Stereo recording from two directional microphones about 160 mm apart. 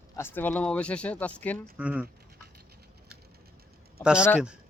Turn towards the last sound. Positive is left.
turn(degrees=-5)  # may be behind; listen again after turning